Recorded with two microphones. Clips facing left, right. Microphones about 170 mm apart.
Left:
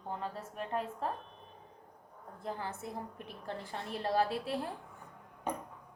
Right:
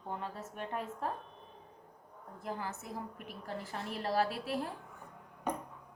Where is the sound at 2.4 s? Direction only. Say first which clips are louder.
Left 1 dB; 30° left (ahead or behind).